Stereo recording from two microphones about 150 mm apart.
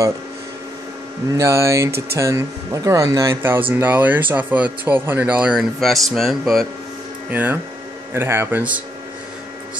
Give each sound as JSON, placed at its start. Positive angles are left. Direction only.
{"t": 1.3, "sound": "speech", "side_deg": -20}
{"t": 7.2, "sound": "speech", "side_deg": -10}